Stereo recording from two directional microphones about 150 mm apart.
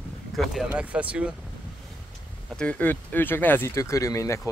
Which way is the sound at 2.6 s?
10° left (ahead or behind).